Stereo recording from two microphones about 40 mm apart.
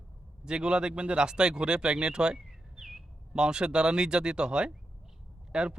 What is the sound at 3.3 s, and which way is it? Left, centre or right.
A man's voice, centre.